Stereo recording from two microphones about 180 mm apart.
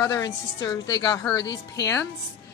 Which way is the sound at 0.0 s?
20° left (ahead or behind).